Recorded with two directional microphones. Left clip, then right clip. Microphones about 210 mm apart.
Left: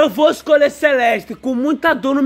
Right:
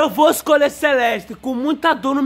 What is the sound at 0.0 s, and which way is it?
Speech, centre (ahead or behind).